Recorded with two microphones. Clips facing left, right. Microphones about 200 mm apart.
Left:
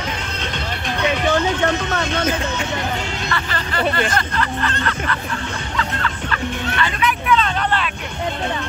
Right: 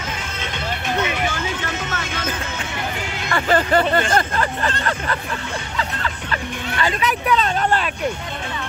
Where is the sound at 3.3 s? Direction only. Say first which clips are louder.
Right 11 dB; 45° right (ahead or behind).